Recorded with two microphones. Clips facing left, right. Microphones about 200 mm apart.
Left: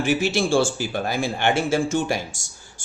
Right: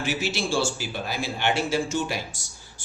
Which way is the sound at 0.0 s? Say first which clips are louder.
Left 7 dB; 50° left (ahead or behind).